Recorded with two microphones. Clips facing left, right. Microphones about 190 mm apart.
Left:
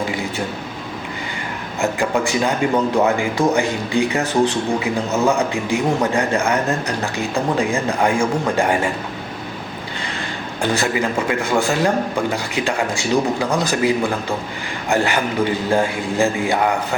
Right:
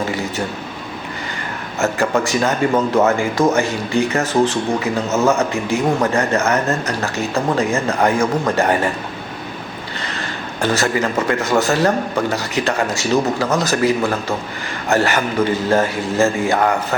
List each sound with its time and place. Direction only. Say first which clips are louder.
0.0 s a sound: right 1 dB; 15° left (ahead or behind)
1.8 s speech: right 2 dB; 15° left (ahead or behind)
10.6 s speech: right 2 dB; 15° left (ahead or behind)